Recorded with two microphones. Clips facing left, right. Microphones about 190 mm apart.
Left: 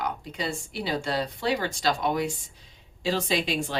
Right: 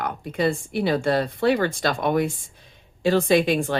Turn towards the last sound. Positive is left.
turn(degrees=-55)  # may be behind; listen again after turning